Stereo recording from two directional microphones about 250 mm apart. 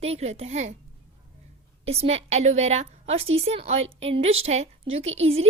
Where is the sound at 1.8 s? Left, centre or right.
Right.